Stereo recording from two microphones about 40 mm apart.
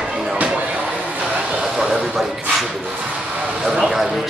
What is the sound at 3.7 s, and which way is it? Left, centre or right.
Speech, centre.